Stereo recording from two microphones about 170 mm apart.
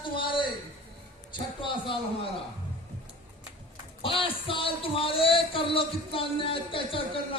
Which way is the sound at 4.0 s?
30° left (ahead or behind).